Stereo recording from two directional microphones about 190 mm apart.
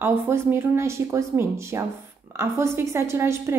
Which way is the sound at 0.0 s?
10° right (ahead or behind).